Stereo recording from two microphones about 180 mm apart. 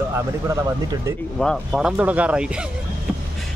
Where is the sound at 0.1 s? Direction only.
15° right (ahead or behind).